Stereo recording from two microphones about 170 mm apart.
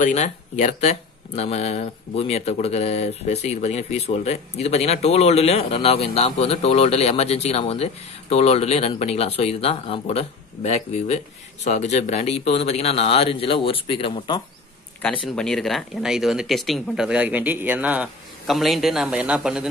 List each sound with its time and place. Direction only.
0.0 s speech: 45° left (ahead or behind); by 14.4 s 30° left (ahead or behind)
15.3 s speech: 5° left (ahead or behind)